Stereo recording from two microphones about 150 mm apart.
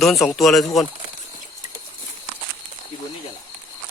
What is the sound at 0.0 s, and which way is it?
Speech, centre (ahead or behind).